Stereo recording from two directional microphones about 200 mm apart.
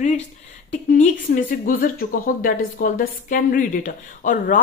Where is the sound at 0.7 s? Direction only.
40° left (ahead or behind).